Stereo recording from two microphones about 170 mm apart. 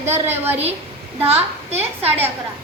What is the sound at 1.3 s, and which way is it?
Speech, 35° right (ahead or behind).